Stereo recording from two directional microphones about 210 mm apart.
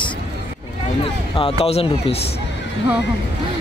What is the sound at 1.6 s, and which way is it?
Speech, 30° left (ahead or behind).